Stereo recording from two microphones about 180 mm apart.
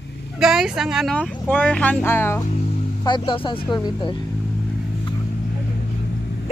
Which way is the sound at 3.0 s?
25° left (ahead or behind).